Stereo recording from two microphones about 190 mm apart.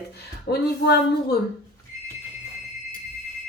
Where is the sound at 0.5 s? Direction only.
55° left (ahead or behind).